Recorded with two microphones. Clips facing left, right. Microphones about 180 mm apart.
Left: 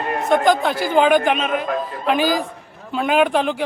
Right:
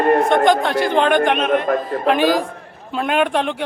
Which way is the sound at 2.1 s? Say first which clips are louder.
Right 3 dB; centre (ahead or behind).